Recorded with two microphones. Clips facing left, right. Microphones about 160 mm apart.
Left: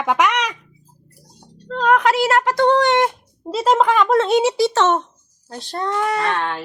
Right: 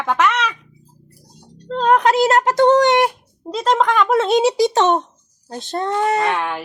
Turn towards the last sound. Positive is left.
turn(degrees=-15)  # may be behind; listen again after turning